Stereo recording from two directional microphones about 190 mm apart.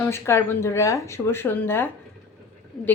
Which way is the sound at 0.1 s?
15° left (ahead or behind).